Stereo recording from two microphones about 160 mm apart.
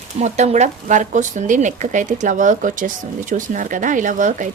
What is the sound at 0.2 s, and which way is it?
Speech, 45° right (ahead or behind).